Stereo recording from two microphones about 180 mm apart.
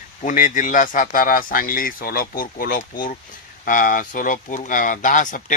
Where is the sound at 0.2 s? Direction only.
45° left (ahead or behind).